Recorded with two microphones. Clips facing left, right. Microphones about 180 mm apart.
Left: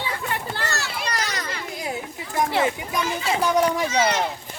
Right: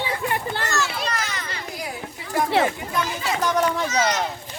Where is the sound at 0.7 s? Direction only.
35° left (ahead or behind).